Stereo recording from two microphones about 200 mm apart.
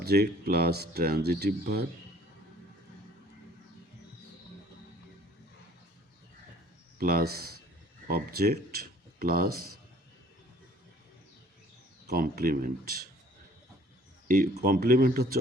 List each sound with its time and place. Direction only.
0.0 s speech: 55° right (ahead or behind)
7.0 s speech: 50° right (ahead or behind)
12.0 s speech: 45° right (ahead or behind)
14.3 s speech: 45° right (ahead or behind)